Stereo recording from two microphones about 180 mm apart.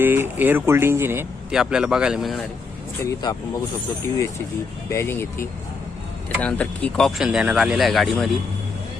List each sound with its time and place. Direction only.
0.0 s speech: 10° right (ahead or behind)
3.0 s speech: 25° left (ahead or behind)
4.9 s speech: 15° left (ahead or behind)